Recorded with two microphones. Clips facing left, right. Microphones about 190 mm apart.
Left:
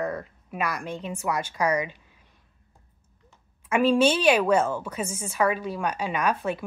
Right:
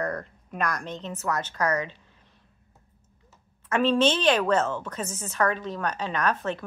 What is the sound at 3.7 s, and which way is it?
A woman's voice, 10° left (ahead or behind).